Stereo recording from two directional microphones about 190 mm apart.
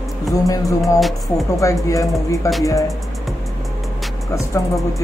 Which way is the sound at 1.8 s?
15° left (ahead or behind).